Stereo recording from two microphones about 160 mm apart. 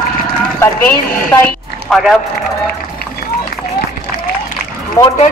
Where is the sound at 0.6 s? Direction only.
15° left (ahead or behind).